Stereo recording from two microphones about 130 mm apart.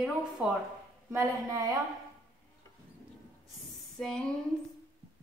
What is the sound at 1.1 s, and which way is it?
Speech, 25° right (ahead or behind).